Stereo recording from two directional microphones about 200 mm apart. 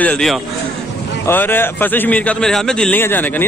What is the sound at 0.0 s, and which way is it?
A man's voice, 5° left (ahead or behind).